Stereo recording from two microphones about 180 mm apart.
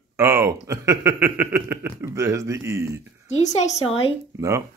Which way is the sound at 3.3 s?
40° left (ahead or behind).